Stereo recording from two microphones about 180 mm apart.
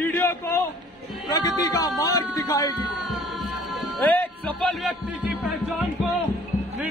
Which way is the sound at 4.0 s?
10° left (ahead or behind).